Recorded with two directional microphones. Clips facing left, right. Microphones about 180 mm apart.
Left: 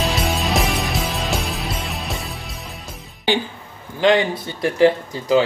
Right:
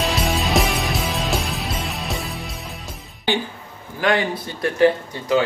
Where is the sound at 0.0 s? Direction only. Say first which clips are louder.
Even; centre (ahead or behind).